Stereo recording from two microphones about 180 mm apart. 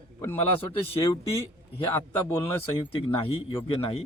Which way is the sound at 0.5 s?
30° left (ahead or behind).